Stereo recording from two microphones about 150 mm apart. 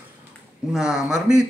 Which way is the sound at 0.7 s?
5° right (ahead or behind).